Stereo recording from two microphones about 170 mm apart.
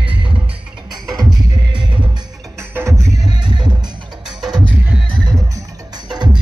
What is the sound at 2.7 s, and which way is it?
Music, 15° right (ahead or behind).